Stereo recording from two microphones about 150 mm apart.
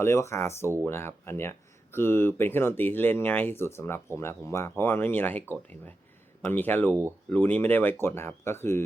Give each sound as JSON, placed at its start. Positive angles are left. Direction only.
{"t": 0.0, "sound": "speech", "side_deg": 20}
{"t": 6.4, "sound": "speech", "side_deg": 10}